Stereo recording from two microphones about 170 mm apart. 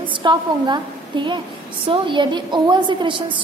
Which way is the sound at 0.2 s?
25° right (ahead or behind).